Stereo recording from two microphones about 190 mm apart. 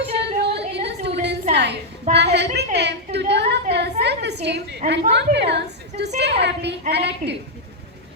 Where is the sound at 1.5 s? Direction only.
65° right (ahead or behind).